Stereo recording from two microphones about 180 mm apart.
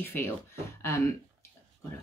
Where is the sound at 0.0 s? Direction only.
10° left (ahead or behind).